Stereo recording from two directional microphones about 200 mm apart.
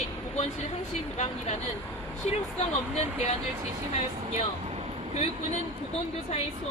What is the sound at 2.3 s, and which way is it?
A woman's voice, 30° left (ahead or behind).